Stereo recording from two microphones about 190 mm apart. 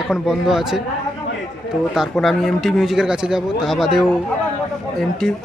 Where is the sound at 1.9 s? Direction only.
Centre (ahead or behind).